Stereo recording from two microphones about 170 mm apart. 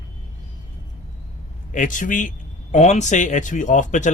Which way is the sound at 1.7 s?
50° left (ahead or behind).